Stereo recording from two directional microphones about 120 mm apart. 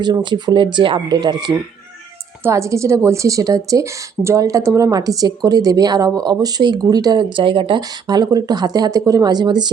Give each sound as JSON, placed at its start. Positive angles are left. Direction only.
{"t": 0.0, "sound": "speech", "side_deg": -40}
{"t": 2.4, "sound": "speech", "side_deg": -25}
{"t": 7.8, "sound": "speech", "side_deg": -35}